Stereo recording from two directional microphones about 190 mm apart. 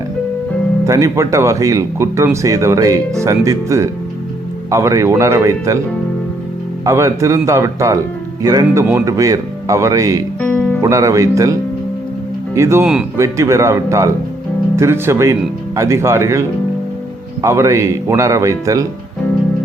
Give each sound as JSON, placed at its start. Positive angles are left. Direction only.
{"t": 0.9, "sound": "speech", "side_deg": -15}
{"t": 6.8, "sound": "speech", "side_deg": -15}
{"t": 10.4, "sound": "music", "side_deg": 10}
{"t": 10.8, "sound": "speech", "side_deg": -15}
{"t": 12.5, "sound": "speech", "side_deg": -15}